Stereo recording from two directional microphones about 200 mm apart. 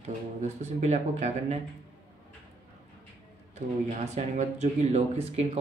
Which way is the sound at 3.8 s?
35° right (ahead or behind).